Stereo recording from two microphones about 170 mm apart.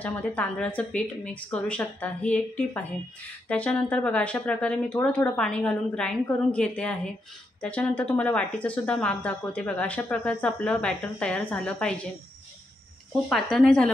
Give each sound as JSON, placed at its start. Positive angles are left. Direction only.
{"t": 0.0, "sound": "speech", "side_deg": 10}
{"t": 13.3, "sound": "speech", "side_deg": 0}